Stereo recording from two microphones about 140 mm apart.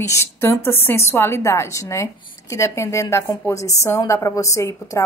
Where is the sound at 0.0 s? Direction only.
20° left (ahead or behind).